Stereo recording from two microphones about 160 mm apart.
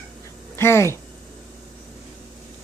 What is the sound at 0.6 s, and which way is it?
Speech, 15° left (ahead or behind).